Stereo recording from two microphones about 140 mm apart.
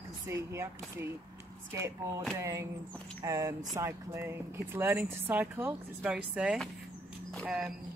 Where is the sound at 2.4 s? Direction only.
20° right (ahead or behind); by 7.7 s 5° right (ahead or behind).